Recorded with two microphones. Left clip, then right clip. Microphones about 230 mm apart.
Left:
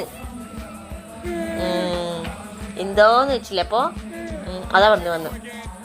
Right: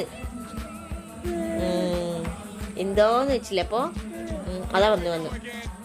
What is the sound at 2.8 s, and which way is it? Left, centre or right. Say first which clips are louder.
Speech: left 6 dB; right.